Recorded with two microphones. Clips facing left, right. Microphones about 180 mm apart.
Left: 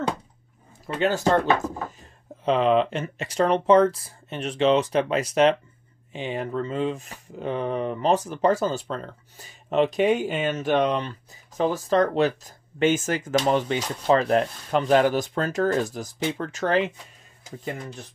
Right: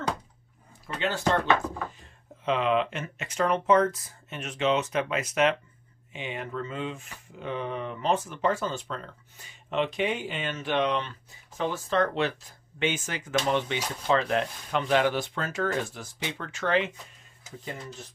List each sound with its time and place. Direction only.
0.9 s speech: 45° left (ahead or behind)